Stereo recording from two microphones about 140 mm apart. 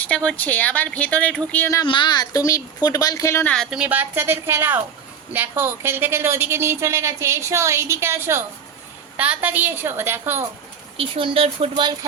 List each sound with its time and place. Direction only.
0.3 s speech: 10° left (ahead or behind)
1.8 s speech: 35° left (ahead or behind)
3.5 s a woman's voice: 5° left (ahead or behind)
3.8 s a woman's voice: 10° right (ahead or behind)
10.9 s speech: 40° right (ahead or behind)